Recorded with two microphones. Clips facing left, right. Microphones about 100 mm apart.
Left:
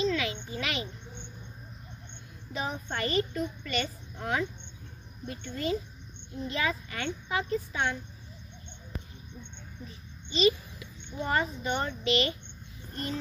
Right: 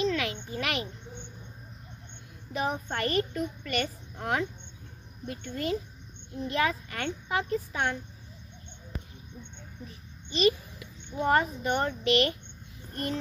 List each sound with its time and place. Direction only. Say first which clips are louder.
0.0 s a sound: even; 55° right (ahead or behind)
2.5 s a child's voice: right 3 dB; 55° right (ahead or behind)
10.3 s a child's voice: even; 55° right (ahead or behind)